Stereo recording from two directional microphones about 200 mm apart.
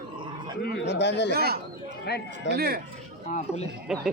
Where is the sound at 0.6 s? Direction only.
55° left (ahead or behind).